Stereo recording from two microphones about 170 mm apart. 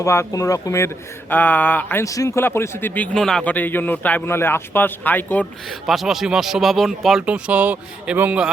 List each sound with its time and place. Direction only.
0.0 s speech: 15° left (ahead or behind)
5.6 s speech: centre (ahead or behind)